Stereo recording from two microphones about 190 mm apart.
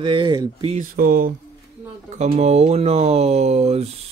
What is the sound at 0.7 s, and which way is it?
Speech, 50° right (ahead or behind).